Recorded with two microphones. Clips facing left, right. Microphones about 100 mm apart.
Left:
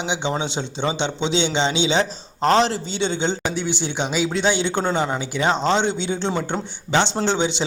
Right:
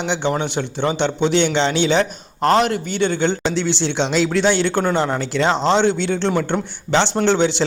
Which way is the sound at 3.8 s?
70° right (ahead or behind).